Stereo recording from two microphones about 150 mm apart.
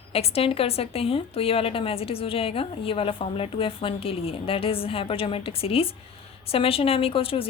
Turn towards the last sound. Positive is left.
turn(degrees=40)  # may be behind; listen again after turning